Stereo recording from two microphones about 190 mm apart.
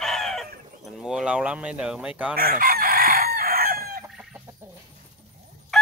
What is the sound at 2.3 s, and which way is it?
Chicken, 50° right (ahead or behind).